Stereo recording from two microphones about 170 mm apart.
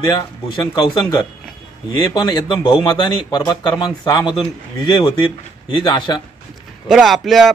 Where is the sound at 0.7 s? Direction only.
25° left (ahead or behind).